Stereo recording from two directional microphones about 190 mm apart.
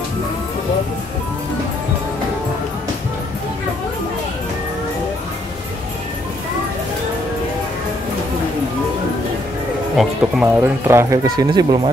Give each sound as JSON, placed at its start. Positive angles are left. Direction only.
{"t": 9.9, "sound": "speech", "side_deg": 0}
{"t": 10.6, "sound": "speech", "side_deg": -15}